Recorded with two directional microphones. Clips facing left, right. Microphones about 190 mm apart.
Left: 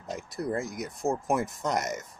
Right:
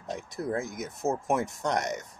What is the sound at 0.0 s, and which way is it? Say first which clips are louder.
Speech: even; centre (ahead or behind).